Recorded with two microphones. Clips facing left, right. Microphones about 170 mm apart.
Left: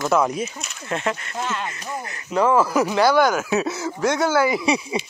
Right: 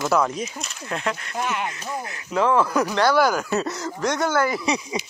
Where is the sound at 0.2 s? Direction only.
10° left (ahead or behind).